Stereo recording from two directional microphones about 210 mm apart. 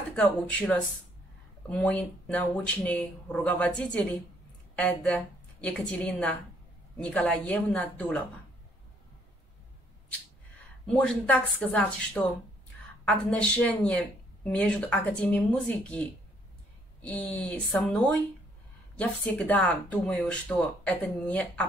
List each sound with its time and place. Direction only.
0.1 s a woman's voice: 5° left (ahead or behind)
11.0 s a woman's voice: 5° left (ahead or behind)